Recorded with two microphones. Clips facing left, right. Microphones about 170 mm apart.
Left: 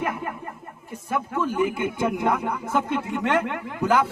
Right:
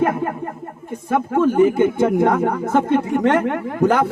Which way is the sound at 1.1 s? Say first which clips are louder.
Right 9 dB; 55° right (ahead or behind).